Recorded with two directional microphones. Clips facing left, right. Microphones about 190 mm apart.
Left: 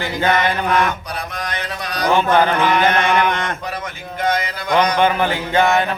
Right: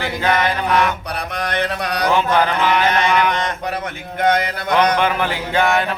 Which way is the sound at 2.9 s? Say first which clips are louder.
Even; 50° left (ahead or behind).